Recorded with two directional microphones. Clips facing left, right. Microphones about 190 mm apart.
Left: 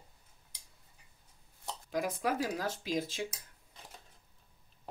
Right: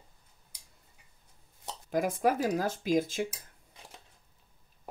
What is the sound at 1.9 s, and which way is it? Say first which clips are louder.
Speech: right 6 dB; 50° right (ahead or behind).